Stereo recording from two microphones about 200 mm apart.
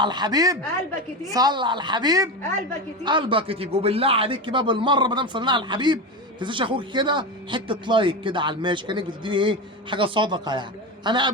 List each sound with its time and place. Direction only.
0.0 s a man's voice: 20° right (ahead or behind)